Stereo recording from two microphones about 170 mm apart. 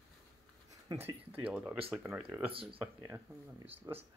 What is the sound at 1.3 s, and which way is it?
Speech, 10° right (ahead or behind).